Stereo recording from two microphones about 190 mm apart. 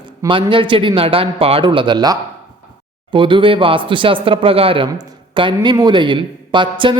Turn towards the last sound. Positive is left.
turn(degrees=-25)  # may be behind; listen again after turning